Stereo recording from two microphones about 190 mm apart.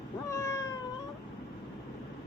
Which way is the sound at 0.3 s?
15° left (ahead or behind).